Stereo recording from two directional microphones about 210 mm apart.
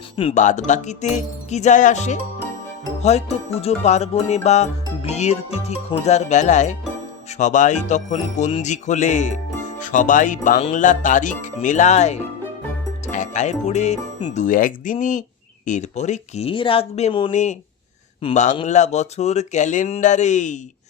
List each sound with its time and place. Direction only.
0.2 s music: 30° left (ahead or behind)
13.1 s speech: 35° left (ahead or behind)
14.3 s music: 40° left (ahead or behind)